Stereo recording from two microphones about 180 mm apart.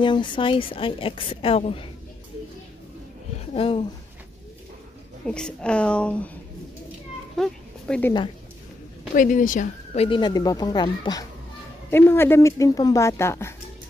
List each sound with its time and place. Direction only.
0.0 s a woman's voice: 25° left (ahead or behind)
3.5 s speech: 30° left (ahead or behind)
5.2 s a woman's voice: 5° left (ahead or behind)
7.3 s cat: 5° left (ahead or behind)
9.1 s speech: 45° left (ahead or behind)
10.0 s a woman's voice: 25° left (ahead or behind)
11.9 s speech: 15° left (ahead or behind)